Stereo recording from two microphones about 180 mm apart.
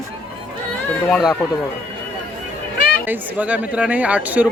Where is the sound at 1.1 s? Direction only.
Centre (ahead or behind).